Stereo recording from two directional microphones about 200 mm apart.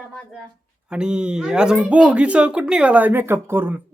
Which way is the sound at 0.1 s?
5° left (ahead or behind).